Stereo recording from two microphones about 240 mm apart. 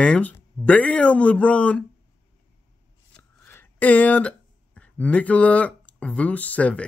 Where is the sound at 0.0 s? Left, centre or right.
Centre.